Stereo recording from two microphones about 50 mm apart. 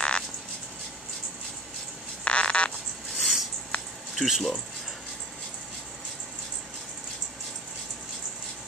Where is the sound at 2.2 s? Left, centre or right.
Left.